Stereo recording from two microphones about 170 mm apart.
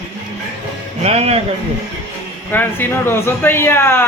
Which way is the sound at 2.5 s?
10° left (ahead or behind).